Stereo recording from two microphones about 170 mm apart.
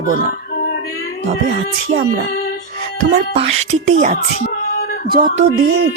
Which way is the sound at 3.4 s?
40° right (ahead or behind).